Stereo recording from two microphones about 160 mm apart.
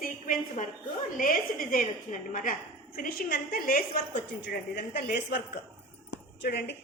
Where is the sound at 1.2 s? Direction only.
60° left (ahead or behind).